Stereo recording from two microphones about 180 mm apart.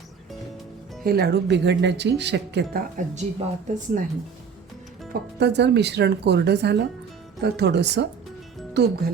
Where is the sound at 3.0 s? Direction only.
50° right (ahead or behind).